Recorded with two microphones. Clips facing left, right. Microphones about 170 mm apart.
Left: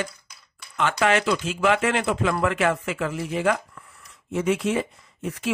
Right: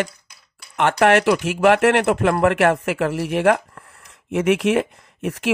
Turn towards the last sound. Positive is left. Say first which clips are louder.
# right 5 dB
turn(degrees=-80)